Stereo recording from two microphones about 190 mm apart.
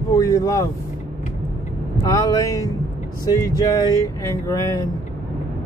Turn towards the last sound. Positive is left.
turn(degrees=20)  # may be behind; listen again after turning